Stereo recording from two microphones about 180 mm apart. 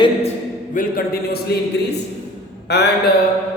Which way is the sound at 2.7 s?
70° left (ahead or behind).